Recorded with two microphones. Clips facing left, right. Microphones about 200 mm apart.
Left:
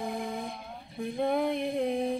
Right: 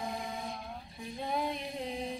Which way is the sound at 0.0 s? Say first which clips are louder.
Left 5 dB; 55° left (ahead or behind).